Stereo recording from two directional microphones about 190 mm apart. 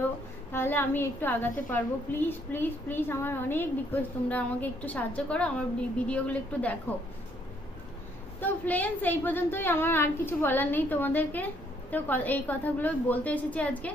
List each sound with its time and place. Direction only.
0.5 s a woman's voice: 10° left (ahead or behind)
8.4 s a woman's voice: 10° left (ahead or behind)